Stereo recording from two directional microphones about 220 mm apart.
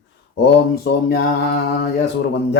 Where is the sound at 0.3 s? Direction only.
50° left (ahead or behind).